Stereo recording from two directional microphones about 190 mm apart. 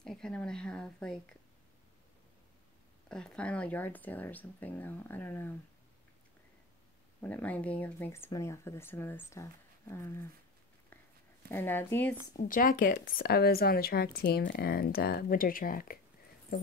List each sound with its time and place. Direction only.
0.0 s a woman's voice: 5° left (ahead or behind)
3.1 s speech: 5° left (ahead or behind)
7.2 s speech: 10° left (ahead or behind)
11.4 s speech: 10° left (ahead or behind)
12.4 s a woman's voice: 45° left (ahead or behind)